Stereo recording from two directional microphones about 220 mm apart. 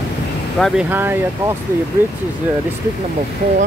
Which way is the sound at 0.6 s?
Centre (ahead or behind).